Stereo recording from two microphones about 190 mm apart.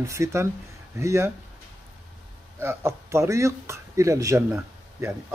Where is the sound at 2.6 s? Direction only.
15° right (ahead or behind).